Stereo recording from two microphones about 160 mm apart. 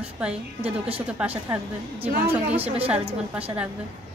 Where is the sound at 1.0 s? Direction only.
10° right (ahead or behind).